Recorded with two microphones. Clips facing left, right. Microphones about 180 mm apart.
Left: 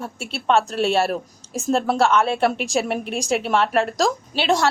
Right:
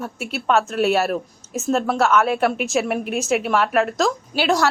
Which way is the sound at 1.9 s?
30° left (ahead or behind).